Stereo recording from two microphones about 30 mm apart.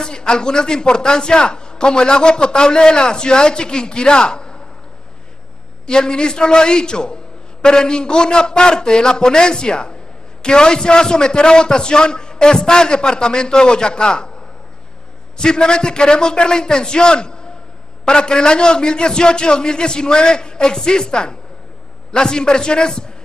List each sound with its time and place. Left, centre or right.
0.0 s a man's voice: left
5.9 s a man's voice: left
15.3 s a man's voice: left